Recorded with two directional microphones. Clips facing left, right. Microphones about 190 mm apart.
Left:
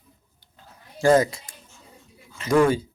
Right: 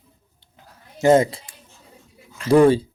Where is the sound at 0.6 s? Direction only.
25° right (ahead or behind).